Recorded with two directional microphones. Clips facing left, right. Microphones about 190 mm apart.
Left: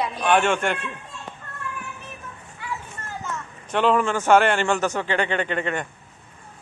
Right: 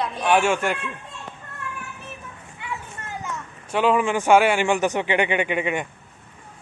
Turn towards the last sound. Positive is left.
turn(degrees=-10)  # may be behind; listen again after turning